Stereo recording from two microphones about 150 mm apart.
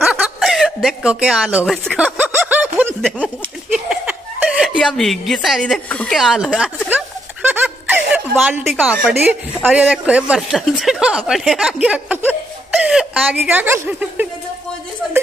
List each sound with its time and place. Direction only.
0.0 s chuckle: 5° right (ahead or behind)
2.0 s a sound: 10° right (ahead or behind)
2.9 s speech: 5° left (ahead or behind)
3.7 s chuckle: 5° right (ahead or behind)
6.1 s speech: centre (ahead or behind)
7.4 s music: 10° right (ahead or behind)
8.7 s a woman's voice: 10° right (ahead or behind)